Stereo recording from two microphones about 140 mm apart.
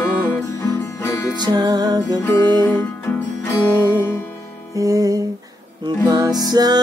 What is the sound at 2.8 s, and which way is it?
Music, 15° left (ahead or behind).